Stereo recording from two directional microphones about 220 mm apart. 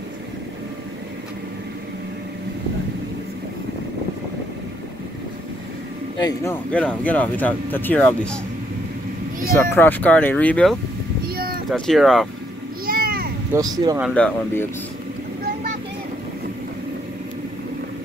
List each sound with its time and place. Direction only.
6.7 s speech: 5° left (ahead or behind)
9.5 s speech: 10° left (ahead or behind)
11.2 s a sound: 45° right (ahead or behind)
11.7 s speech: centre (ahead or behind)
12.8 s a sound: 40° right (ahead or behind)
13.5 s speech: 15° right (ahead or behind)
14.0 s speech: 5° left (ahead or behind)